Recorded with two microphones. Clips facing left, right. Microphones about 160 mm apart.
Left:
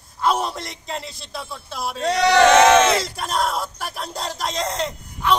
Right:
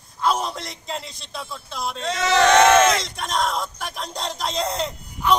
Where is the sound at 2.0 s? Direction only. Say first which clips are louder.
Left 7 dB; 35° left (ahead or behind).